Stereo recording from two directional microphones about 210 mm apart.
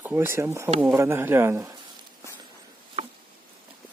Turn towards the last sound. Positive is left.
turn(degrees=-30)  # may be behind; listen again after turning